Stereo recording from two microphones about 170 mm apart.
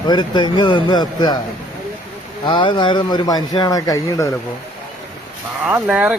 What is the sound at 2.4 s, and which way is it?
Speech, 30° left (ahead or behind).